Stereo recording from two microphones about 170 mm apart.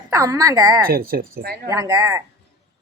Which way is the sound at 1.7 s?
20° right (ahead or behind).